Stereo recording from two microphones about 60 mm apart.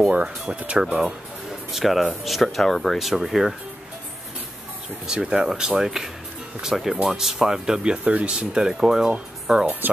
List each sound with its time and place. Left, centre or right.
0.1 s speech: centre
1.7 s speech: centre
5.0 s speech: centre